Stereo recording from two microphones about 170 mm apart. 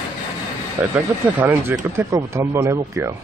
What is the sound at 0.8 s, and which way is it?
Speech, 10° right (ahead or behind).